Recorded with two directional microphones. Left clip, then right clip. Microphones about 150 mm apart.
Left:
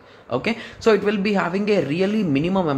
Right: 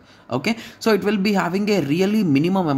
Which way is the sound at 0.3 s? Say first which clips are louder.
Even; 30° right (ahead or behind).